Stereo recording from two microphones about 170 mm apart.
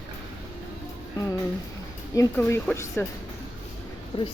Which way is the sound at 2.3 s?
10° left (ahead or behind).